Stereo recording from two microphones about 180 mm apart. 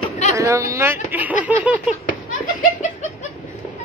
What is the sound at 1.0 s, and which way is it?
Snicker, 10° right (ahead or behind).